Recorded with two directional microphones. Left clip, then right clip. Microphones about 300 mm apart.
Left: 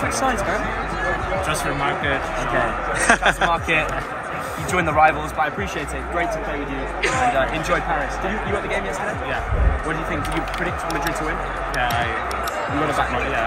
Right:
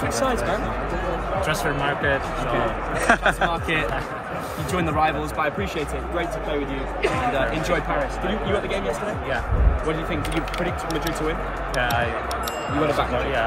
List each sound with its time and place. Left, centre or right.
3.0 s a man's voice: centre